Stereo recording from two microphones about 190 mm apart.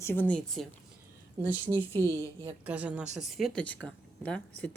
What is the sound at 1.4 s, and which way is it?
A woman's voice, 15° right (ahead or behind).